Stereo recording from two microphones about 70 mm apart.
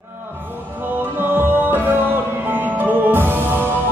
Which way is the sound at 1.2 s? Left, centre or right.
Right.